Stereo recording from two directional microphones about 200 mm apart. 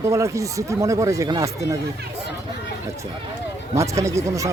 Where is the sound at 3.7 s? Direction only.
15° right (ahead or behind).